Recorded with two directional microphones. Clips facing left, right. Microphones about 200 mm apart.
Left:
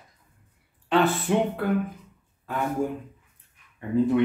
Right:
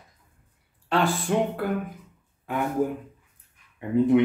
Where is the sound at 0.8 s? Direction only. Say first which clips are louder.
Left 2 dB; 5° left (ahead or behind).